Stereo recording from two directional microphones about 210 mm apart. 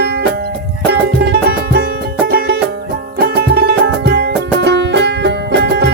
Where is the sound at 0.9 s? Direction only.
50° right (ahead or behind).